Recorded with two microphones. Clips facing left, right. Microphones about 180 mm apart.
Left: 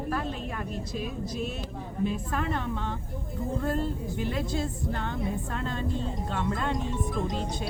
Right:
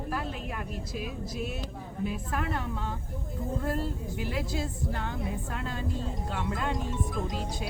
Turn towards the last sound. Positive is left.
turn(degrees=-10)  # may be behind; listen again after turning